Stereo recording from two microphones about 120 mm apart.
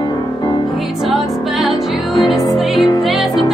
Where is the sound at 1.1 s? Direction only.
Centre (ahead or behind).